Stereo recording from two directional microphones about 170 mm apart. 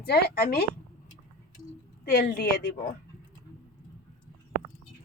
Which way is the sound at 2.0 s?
65° left (ahead or behind).